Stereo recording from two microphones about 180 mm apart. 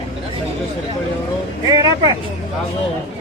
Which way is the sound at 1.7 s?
20° right (ahead or behind).